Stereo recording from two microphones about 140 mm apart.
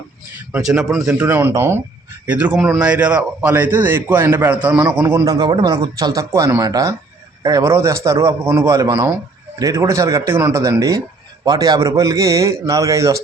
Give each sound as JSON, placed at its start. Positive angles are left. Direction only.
{"t": 0.6, "sound": "speech", "side_deg": -5}
{"t": 1.2, "sound": "a man's voice", "side_deg": -15}
{"t": 5.1, "sound": "a man's voice", "side_deg": -30}